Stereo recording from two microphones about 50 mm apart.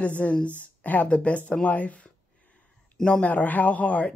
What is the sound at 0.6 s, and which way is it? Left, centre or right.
Speech, left.